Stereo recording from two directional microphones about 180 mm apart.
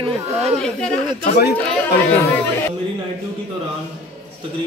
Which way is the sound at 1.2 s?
50° left (ahead or behind).